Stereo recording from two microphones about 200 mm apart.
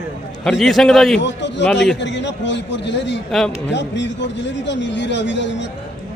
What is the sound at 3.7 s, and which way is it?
Speech, 60° left (ahead or behind).